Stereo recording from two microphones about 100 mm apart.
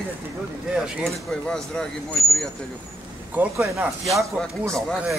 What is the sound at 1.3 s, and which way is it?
Speech, 5° left (ahead or behind).